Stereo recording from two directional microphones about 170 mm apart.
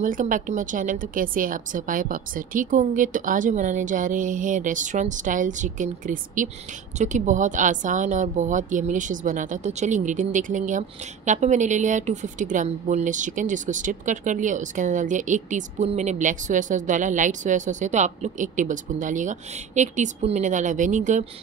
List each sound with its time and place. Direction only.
0.0 s a woman's voice: 50° right (ahead or behind)